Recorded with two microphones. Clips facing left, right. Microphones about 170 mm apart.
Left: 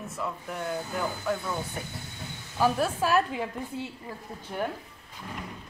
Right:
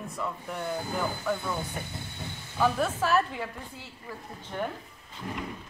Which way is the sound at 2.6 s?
10° left (ahead or behind).